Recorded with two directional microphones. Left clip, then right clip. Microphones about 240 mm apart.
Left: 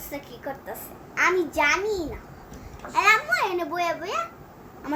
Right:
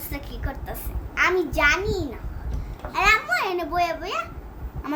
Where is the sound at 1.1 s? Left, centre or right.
Centre.